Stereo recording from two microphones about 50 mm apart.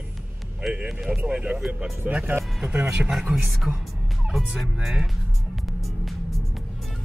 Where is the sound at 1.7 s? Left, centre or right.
Right.